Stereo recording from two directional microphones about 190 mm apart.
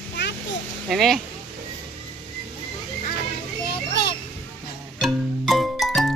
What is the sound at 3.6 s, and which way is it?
Children playing, 60° left (ahead or behind).